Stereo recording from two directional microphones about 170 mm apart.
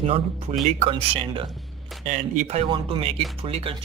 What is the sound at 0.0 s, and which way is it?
Speech, 35° right (ahead or behind).